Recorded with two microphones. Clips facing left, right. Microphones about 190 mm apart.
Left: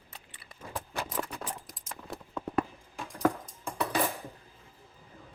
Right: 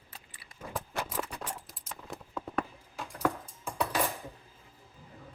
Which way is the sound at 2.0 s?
Centre (ahead or behind).